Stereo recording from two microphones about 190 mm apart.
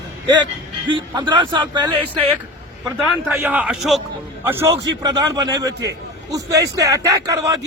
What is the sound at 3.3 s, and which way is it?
A man's voice, 5° right (ahead or behind).